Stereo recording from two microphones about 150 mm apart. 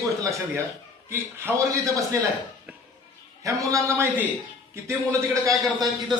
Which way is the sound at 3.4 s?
20° right (ahead or behind).